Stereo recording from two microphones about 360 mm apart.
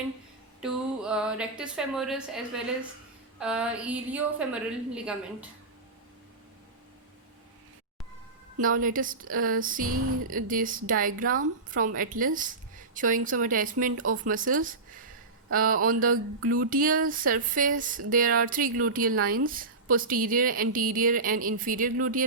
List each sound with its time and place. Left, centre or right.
0.6 s a woman's voice: centre
8.6 s a woman's voice: right